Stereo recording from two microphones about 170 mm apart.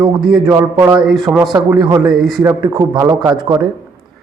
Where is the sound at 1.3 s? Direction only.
30° right (ahead or behind).